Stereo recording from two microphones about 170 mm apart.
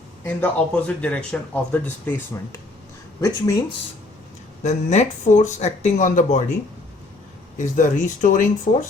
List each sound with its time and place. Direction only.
0.3 s speech: 10° left (ahead or behind)
4.6 s speech: 40° left (ahead or behind)
7.6 s speech: 45° left (ahead or behind)